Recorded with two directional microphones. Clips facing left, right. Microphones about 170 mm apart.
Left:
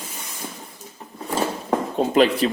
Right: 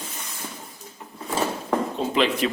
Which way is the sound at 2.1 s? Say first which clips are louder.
Left 5 dB; 45° left (ahead or behind).